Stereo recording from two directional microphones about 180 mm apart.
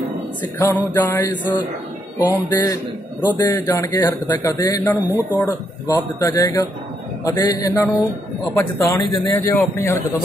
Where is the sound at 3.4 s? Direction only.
15° left (ahead or behind).